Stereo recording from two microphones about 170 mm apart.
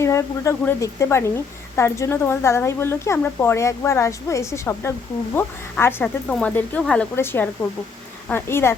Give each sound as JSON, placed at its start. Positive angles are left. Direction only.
{"t": 0.0, "sound": "a woman's voice", "side_deg": 15}